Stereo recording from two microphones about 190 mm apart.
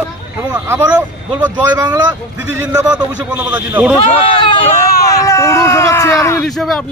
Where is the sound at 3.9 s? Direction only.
30° left (ahead or behind).